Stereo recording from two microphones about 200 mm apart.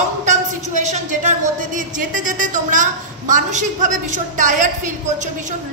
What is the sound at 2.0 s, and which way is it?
A woman's voice, 40° right (ahead or behind).